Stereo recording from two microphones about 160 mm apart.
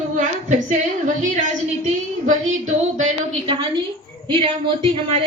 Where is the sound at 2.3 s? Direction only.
50° right (ahead or behind).